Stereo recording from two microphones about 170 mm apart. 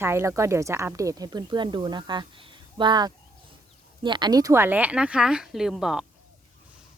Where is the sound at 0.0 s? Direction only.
15° right (ahead or behind).